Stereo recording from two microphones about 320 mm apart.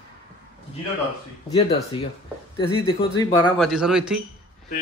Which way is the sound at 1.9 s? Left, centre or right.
Centre.